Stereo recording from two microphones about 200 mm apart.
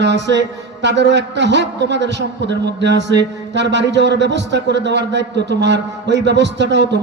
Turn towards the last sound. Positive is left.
turn(degrees=-60)  # may be behind; listen again after turning